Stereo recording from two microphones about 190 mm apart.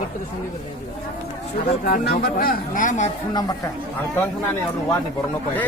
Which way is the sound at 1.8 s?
50° left (ahead or behind).